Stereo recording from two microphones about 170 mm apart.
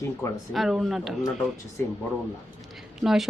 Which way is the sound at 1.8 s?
10° left (ahead or behind).